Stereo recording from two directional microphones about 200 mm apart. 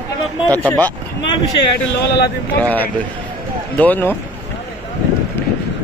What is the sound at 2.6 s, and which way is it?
A man's voice, 10° left (ahead or behind).